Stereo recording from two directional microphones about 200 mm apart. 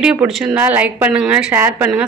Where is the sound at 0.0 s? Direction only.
5° right (ahead or behind).